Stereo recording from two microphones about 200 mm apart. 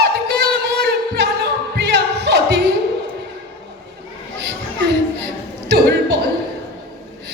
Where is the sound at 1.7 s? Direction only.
55° right (ahead or behind).